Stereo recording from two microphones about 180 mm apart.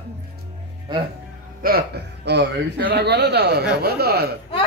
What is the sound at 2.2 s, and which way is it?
A man's voice, 60° right (ahead or behind).